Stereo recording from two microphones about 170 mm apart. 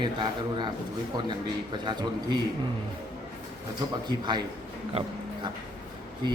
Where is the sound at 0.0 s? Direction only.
25° right (ahead or behind).